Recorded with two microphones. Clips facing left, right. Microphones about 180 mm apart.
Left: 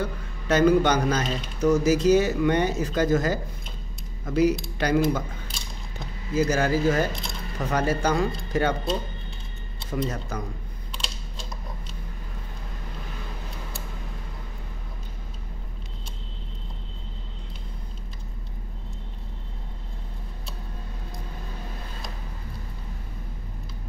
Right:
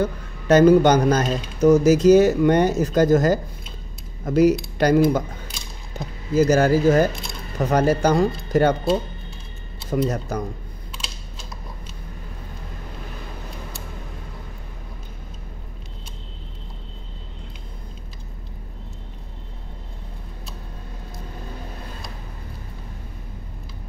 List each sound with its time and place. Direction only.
0.0 s a man's voice: 45° right (ahead or behind)
6.3 s speech: 40° right (ahead or behind)
9.8 s speech: 40° right (ahead or behind)
10.9 s typing: 5° right (ahead or behind)